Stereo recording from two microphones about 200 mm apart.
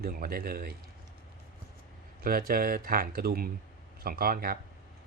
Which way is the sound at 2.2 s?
45° right (ahead or behind).